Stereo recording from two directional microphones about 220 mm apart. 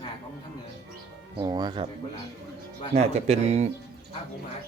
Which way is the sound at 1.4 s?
20° right (ahead or behind).